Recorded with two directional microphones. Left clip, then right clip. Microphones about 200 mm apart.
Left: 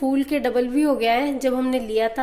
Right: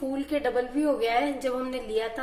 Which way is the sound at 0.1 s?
45° left (ahead or behind).